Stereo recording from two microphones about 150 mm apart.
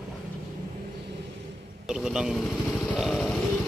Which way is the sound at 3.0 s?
Centre (ahead or behind).